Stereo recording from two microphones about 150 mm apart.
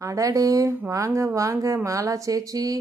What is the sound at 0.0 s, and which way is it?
Speech, 20° right (ahead or behind).